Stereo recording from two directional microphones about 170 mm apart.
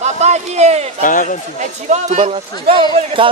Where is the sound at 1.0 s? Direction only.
50° left (ahead or behind).